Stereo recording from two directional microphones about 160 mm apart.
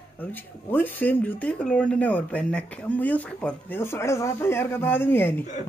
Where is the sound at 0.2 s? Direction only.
10° left (ahead or behind).